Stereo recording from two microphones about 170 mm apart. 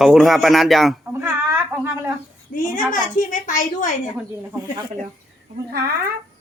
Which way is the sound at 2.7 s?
50° left (ahead or behind).